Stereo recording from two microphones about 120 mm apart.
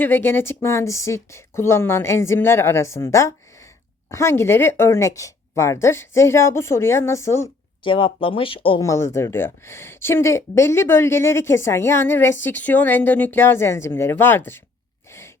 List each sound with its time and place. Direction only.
0.0 s speech: 15° left (ahead or behind)
7.9 s speech: 50° left (ahead or behind)
8.8 s speech: 25° left (ahead or behind)